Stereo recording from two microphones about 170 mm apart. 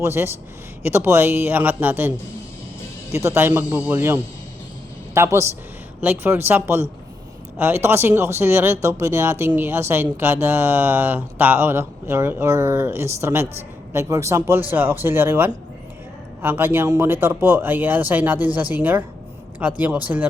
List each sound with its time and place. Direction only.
0.0 s speech: 15° right (ahead or behind)